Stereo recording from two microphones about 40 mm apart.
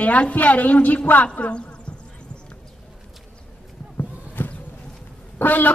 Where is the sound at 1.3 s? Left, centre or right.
Left.